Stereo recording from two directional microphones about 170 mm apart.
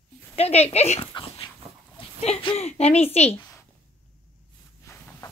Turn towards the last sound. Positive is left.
turn(degrees=20)  # may be behind; listen again after turning